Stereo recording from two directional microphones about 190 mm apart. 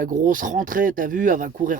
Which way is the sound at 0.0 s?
45° right (ahead or behind).